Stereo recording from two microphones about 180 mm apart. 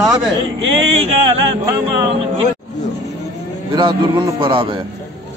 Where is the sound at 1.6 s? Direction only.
15° right (ahead or behind).